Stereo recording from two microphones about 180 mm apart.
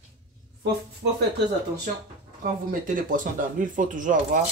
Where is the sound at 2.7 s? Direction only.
50° right (ahead or behind).